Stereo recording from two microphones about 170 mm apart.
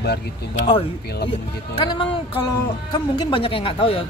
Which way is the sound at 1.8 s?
30° left (ahead or behind).